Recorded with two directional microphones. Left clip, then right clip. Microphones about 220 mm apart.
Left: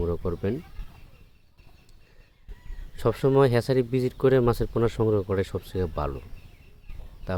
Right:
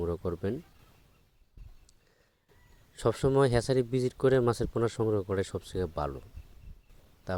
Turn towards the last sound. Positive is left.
turn(degrees=-35)  # may be behind; listen again after turning